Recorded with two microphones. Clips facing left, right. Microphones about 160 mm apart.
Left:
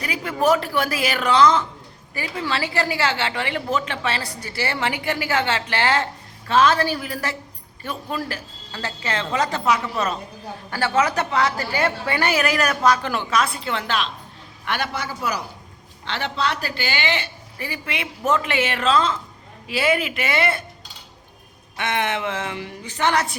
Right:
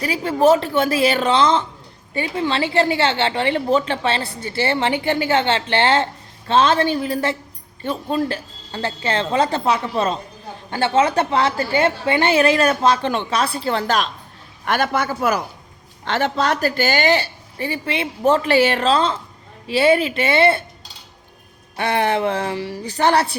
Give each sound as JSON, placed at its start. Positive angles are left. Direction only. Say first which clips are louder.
{"t": 0.0, "sound": "a woman's voice", "louder": "right 5 dB", "side_deg": -30}
{"t": 21.8, "sound": "a woman's voice", "louder": "right 5 dB", "side_deg": -35}